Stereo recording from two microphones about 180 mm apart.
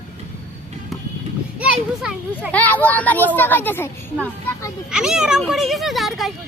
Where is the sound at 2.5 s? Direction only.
10° left (ahead or behind).